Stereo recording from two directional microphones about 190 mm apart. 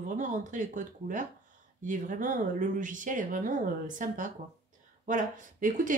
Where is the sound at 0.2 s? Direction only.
40° right (ahead or behind).